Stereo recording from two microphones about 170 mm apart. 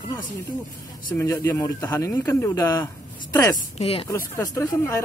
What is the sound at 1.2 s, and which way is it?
Speech, 15° left (ahead or behind).